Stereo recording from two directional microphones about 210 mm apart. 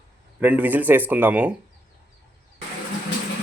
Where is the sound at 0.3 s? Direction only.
5° right (ahead or behind).